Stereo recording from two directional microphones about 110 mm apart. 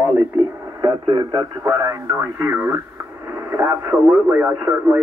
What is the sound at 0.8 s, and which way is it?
Speech, 45° right (ahead or behind).